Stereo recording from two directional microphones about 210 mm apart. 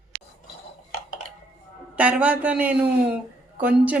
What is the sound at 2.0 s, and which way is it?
A woman's voice, 5° right (ahead or behind).